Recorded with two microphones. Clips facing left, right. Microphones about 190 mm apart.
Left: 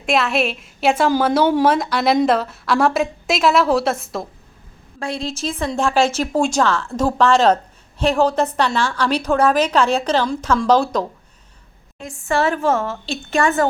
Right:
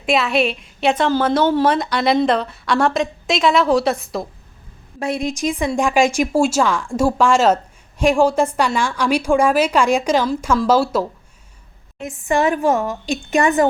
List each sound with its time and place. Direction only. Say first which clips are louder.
0.0 s a woman's voice: right 1 dB; centre (ahead or behind)
4.9 s a woman's voice: right 4 dB; 20° right (ahead or behind)
11.9 s a woman's voice: right 2 dB; 20° right (ahead or behind)